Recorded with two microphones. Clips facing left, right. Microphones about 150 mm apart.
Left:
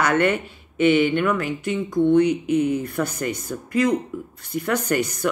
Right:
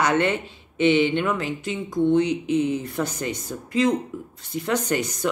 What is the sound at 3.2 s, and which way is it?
Speech, 20° right (ahead or behind).